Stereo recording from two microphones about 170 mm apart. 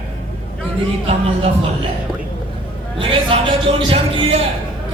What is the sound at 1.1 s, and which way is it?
Speech, 35° right (ahead or behind).